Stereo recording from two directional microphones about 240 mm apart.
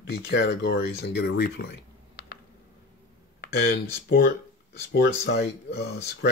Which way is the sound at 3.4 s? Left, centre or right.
Left.